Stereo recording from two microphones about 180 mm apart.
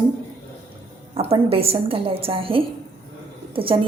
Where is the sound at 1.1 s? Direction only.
35° right (ahead or behind).